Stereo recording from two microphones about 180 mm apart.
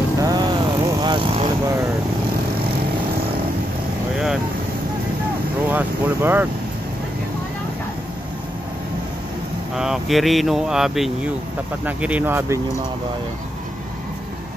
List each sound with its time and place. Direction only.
0.2 s vehicle: 25° right (ahead or behind)
5.7 s speech: 10° right (ahead or behind)
9.8 s speech: centre (ahead or behind)